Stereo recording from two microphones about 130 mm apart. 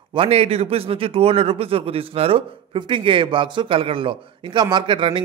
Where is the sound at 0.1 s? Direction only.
45° right (ahead or behind).